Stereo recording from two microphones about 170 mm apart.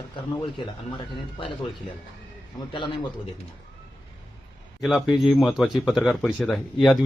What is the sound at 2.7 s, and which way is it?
Speech, 30° left (ahead or behind).